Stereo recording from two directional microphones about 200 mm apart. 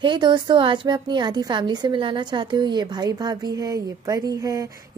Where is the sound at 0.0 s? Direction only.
25° right (ahead or behind).